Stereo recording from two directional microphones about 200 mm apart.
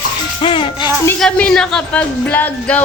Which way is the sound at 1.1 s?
5° left (ahead or behind).